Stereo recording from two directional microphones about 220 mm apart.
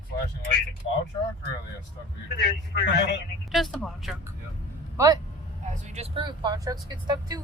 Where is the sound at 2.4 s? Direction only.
50° left (ahead or behind).